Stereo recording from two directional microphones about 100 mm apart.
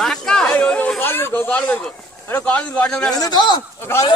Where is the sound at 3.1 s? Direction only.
40° left (ahead or behind).